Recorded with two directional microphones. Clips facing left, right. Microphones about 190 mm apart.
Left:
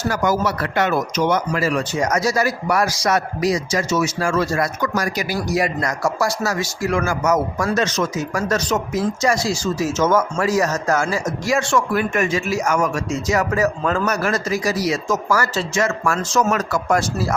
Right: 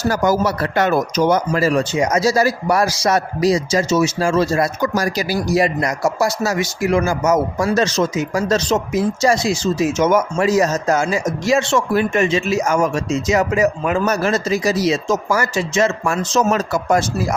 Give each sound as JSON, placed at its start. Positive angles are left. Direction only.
{"t": 0.1, "sound": "speech", "side_deg": -35}